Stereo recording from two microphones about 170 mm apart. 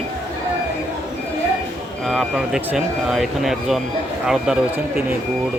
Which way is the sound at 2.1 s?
Centre (ahead or behind).